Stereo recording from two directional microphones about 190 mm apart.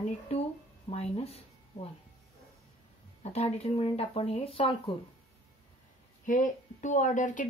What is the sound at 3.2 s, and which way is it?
Speech, 35° left (ahead or behind).